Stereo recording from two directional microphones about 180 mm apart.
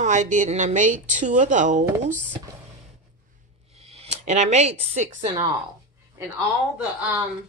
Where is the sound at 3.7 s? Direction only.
35° right (ahead or behind).